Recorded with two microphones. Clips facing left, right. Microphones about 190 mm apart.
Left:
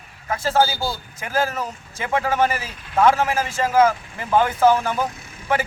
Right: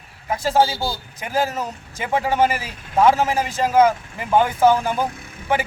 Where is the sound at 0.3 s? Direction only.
20° right (ahead or behind).